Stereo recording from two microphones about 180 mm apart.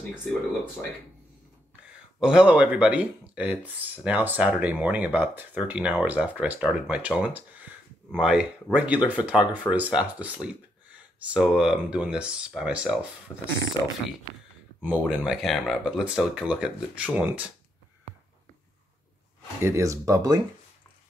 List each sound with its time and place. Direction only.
2.1 s speech: 5° right (ahead or behind)
13.3 s speech: 15° left (ahead or behind)
14.8 s speech: 5° right (ahead or behind)
19.6 s speech: 15° right (ahead or behind)